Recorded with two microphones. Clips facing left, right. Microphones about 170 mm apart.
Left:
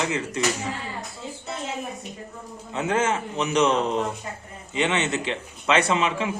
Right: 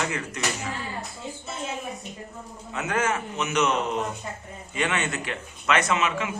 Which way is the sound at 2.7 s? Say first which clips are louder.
Left 3 dB; 25° left (ahead or behind).